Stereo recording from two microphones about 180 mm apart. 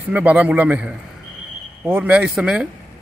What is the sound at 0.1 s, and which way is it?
Speech, 10° right (ahead or behind).